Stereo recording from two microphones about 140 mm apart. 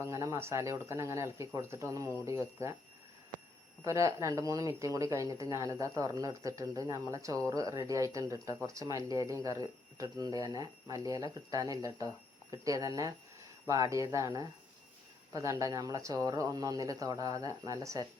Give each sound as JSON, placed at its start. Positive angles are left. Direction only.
{"t": 0.0, "sound": "speech", "side_deg": -20}
{"t": 3.8, "sound": "speech", "side_deg": -20}